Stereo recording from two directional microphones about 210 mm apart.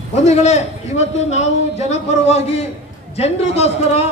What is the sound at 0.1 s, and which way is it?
A man's voice, 30° left (ahead or behind).